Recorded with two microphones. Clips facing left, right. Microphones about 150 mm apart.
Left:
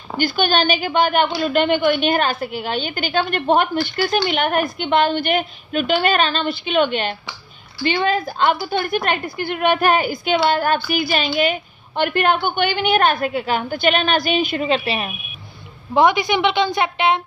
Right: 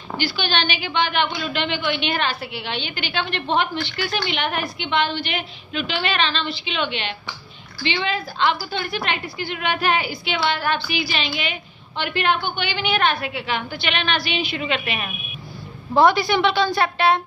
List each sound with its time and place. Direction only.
0.2 s a woman's voice: 45° left (ahead or behind)
14.7 s a woman's voice: 35° left (ahead or behind)
15.9 s a woman's voice: 15° left (ahead or behind)